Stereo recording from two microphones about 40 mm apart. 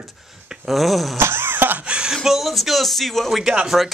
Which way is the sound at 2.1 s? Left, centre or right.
Centre.